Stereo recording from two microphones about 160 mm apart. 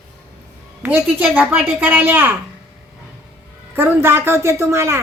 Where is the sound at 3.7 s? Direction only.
15° right (ahead or behind).